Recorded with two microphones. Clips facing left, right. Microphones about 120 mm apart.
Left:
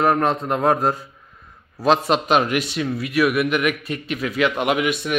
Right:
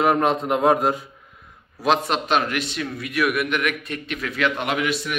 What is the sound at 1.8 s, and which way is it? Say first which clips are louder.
A man's voice: left 3 dB; 5° left (ahead or behind).